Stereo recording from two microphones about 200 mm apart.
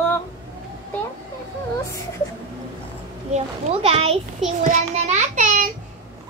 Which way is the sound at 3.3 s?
30° right (ahead or behind).